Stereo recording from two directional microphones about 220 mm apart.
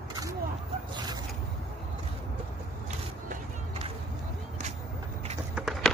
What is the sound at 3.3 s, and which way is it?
Music, 30° right (ahead or behind).